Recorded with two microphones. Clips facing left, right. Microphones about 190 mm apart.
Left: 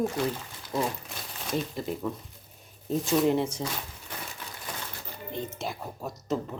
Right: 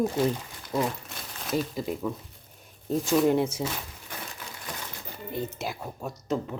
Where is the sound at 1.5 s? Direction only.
Centre (ahead or behind).